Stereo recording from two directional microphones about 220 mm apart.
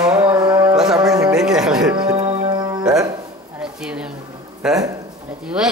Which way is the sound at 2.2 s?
30° right (ahead or behind).